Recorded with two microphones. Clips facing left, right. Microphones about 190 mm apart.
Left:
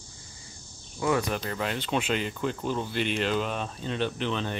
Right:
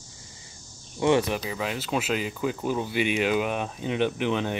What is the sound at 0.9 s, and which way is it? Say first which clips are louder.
Speech: right 5 dB; 25° right (ahead or behind).